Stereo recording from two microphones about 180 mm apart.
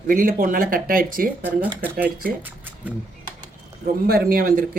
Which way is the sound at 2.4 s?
10° right (ahead or behind).